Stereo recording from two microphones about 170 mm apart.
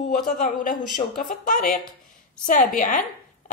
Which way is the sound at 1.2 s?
55° left (ahead or behind).